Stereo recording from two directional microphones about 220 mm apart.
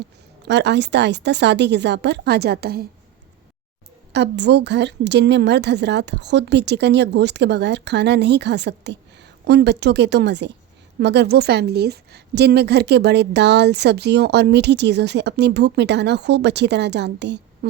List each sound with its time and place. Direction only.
0.0 s a woman's voice: 50° right (ahead or behind)
4.1 s a woman's voice: 50° right (ahead or behind)